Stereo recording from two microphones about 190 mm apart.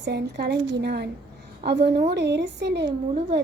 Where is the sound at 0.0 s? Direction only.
60° right (ahead or behind).